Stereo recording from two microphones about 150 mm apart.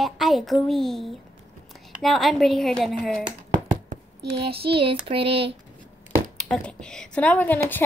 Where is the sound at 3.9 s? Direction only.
90° right.